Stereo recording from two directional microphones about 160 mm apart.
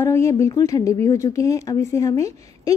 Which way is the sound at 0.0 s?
15° left (ahead or behind).